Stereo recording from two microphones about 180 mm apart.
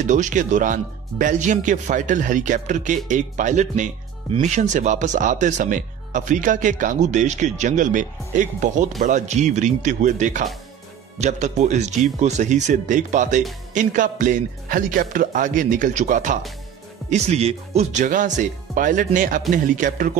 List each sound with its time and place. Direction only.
0.0 s speech: 45° right (ahead or behind)